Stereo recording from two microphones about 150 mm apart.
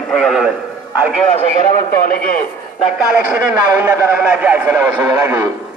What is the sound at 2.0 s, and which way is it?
Speech, 70° left (ahead or behind).